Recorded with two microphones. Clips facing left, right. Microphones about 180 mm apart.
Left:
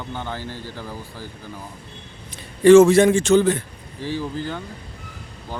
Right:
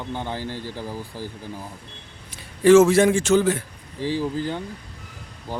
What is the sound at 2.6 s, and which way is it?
A man's voice, 5° right (ahead or behind).